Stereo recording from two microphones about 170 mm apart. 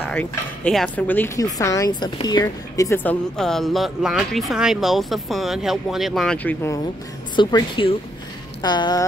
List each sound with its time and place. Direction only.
0.0 s speech: 10° left (ahead or behind)
7.3 s speech: 30° left (ahead or behind)